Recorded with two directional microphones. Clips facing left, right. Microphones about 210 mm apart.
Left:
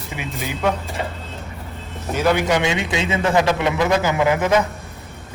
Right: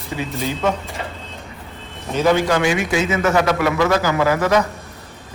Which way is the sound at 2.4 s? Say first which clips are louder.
Right 2 dB; 20° left (ahead or behind).